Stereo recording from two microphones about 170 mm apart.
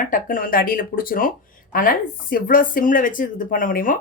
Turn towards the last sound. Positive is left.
turn(degrees=55)  # may be behind; listen again after turning